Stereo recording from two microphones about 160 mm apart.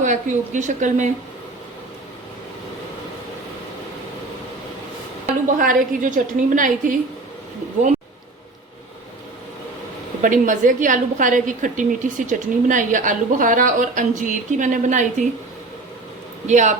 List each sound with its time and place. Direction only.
0.0 s a woman's voice: 50° right (ahead or behind)
5.2 s a woman's voice: 55° right (ahead or behind)
10.2 s a woman's voice: 55° right (ahead or behind)
16.5 s a woman's voice: 50° right (ahead or behind)